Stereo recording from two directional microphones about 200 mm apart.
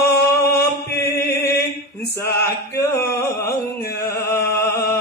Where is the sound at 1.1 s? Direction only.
50° left (ahead or behind).